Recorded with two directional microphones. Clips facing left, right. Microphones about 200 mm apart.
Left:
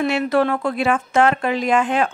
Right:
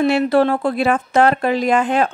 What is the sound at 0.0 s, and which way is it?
A woman's voice, 30° right (ahead or behind).